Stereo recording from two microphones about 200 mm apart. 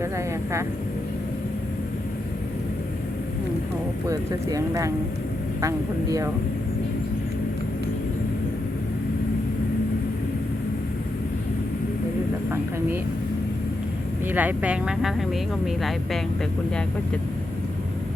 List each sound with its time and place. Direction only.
4.1 s speech: 15° right (ahead or behind)
14.3 s speech: 10° right (ahead or behind)